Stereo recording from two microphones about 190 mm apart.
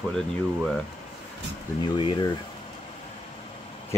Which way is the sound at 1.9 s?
25° left (ahead or behind).